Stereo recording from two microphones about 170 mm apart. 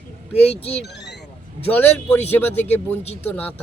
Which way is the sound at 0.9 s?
85° left.